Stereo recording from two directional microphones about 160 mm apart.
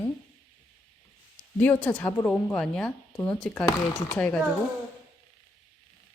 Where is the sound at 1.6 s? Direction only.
10° left (ahead or behind).